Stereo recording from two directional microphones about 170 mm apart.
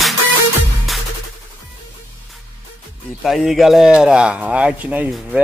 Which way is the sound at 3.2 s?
Centre (ahead or behind).